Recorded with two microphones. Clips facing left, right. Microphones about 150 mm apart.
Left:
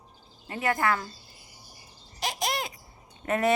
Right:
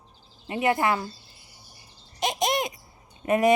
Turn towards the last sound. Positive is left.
turn(degrees=-15)  # may be behind; listen again after turning